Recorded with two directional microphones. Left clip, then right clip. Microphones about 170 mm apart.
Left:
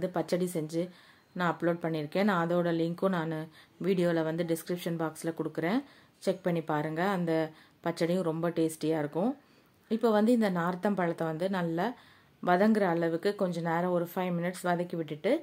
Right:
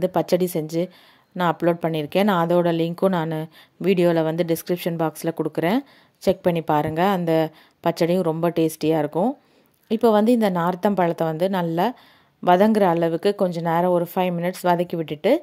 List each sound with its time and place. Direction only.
0.0 s a woman's voice: 40° right (ahead or behind)